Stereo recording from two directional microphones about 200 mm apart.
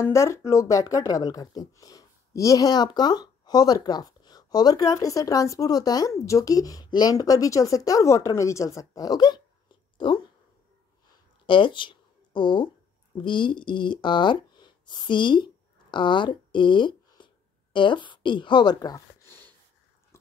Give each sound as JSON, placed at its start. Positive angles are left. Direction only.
{"t": 0.0, "sound": "speech", "side_deg": 15}
{"t": 11.4, "sound": "speech", "side_deg": 25}